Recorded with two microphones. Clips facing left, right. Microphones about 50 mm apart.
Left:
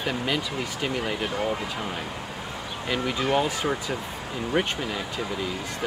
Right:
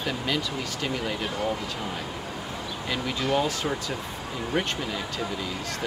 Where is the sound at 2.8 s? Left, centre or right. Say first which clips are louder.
Left 2 dB; centre.